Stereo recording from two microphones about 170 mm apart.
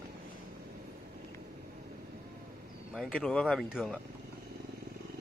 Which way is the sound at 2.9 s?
Centre (ahead or behind).